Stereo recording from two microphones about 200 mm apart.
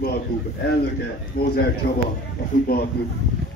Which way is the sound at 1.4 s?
50° left (ahead or behind).